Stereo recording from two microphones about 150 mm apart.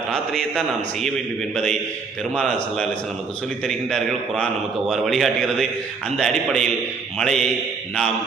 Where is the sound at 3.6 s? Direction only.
5° left (ahead or behind).